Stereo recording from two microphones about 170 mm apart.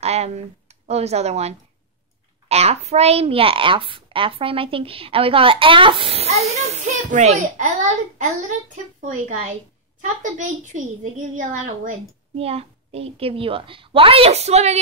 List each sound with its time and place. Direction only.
0.0 s a child's voice: 40° right (ahead or behind)
12.4 s a child's voice: 35° right (ahead or behind)